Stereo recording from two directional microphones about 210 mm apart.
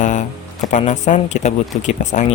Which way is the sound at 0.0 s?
35° left (ahead or behind).